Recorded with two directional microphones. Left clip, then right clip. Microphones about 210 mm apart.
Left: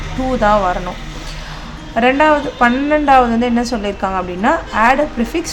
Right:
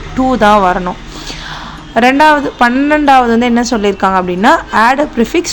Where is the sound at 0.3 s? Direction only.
20° right (ahead or behind).